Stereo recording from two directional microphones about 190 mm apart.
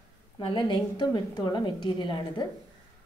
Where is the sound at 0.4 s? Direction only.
25° left (ahead or behind).